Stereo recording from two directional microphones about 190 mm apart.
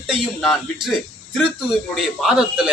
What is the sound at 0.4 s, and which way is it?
Speech, 5° left (ahead or behind).